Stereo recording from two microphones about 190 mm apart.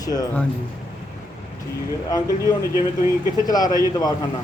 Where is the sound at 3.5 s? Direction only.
20° left (ahead or behind).